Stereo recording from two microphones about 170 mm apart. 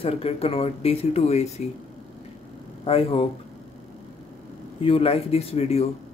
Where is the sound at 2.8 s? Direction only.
35° left (ahead or behind).